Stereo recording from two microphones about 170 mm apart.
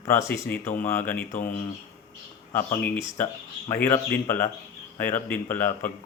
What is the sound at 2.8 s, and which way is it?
Speech, 10° left (ahead or behind).